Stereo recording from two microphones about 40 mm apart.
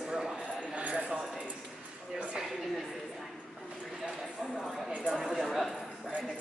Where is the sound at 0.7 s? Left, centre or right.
Right.